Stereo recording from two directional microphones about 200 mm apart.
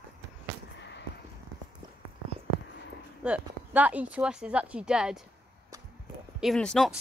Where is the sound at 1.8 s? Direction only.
20° right (ahead or behind).